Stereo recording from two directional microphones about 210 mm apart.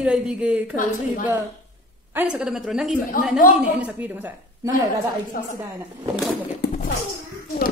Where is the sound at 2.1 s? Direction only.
5° right (ahead or behind).